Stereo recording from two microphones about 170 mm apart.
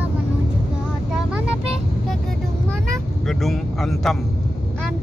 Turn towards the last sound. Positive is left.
turn(degrees=0)  # may be behind; listen again after turning